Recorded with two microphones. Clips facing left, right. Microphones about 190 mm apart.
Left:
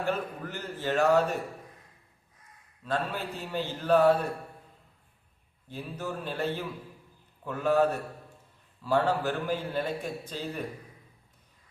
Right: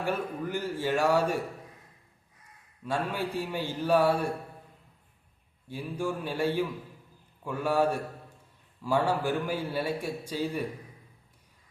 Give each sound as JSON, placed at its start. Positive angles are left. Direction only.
{"t": 0.0, "sound": "a man's voice", "side_deg": -10}
{"t": 2.8, "sound": "a man's voice", "side_deg": -10}
{"t": 5.6, "sound": "a man's voice", "side_deg": -10}